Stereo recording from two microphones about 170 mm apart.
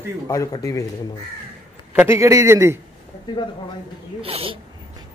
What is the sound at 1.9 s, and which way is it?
Speech, 15° right (ahead or behind).